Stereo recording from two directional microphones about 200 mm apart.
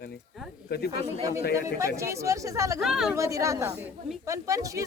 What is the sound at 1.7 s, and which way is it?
Speech, 15° right (ahead or behind).